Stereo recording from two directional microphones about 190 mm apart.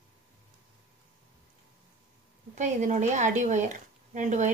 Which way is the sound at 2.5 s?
40° right (ahead or behind).